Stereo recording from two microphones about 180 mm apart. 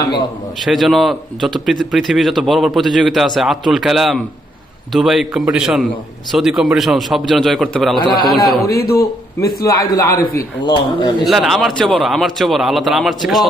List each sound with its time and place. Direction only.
0.7 s speech: centre (ahead or behind)
8.6 s a man's voice: 60° left (ahead or behind)
9.8 s speech: 20° left (ahead or behind)
11.2 s speech: centre (ahead or behind)